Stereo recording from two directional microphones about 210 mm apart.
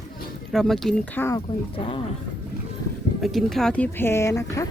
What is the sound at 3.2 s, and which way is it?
Speech, centre (ahead or behind).